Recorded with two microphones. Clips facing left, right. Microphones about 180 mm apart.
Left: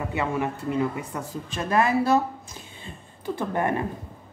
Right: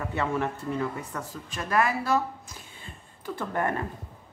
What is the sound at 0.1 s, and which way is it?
A woman's voice, 10° left (ahead or behind).